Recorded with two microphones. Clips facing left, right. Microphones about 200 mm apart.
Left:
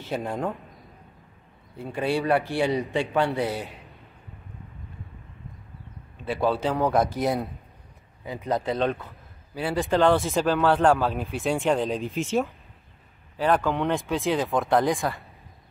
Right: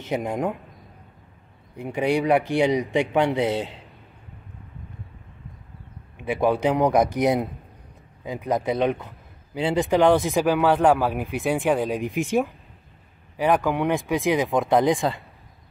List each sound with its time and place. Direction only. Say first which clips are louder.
0.0 s a man's voice: right 3 dB; 15° right (ahead or behind)
1.8 s a man's voice: right 3 dB; 15° right (ahead or behind)
6.1 s a man's voice: right 3 dB; 15° right (ahead or behind)